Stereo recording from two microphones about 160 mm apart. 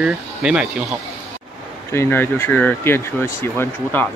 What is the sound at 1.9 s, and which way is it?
Speech, 15° left (ahead or behind).